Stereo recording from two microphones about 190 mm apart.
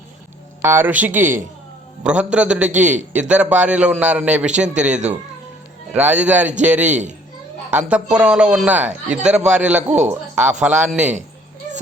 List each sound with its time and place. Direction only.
0.6 s a man's voice: 10° right (ahead or behind)
2.8 s a man's voice: 40° right (ahead or behind)
3.2 s a man's voice: 5° right (ahead or behind)
4.9 s a man's voice: 40° right (ahead or behind)
5.9 s a man's voice: 5° right (ahead or behind)